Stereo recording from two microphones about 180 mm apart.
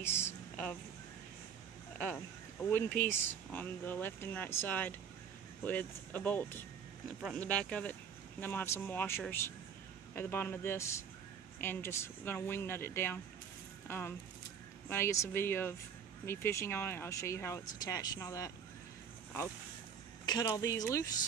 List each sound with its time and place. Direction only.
0.0 s a sound: 10° left (ahead or behind)
2.0 s speech: 10° left (ahead or behind)
20.2 s speech: 20° left (ahead or behind)